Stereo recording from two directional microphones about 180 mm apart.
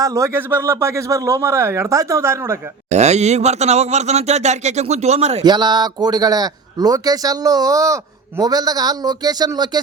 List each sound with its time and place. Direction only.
0.0 s a man's voice: 15° right (ahead or behind)
2.9 s a man's voice: 40° right (ahead or behind)
5.4 s speech: 25° right (ahead or behind)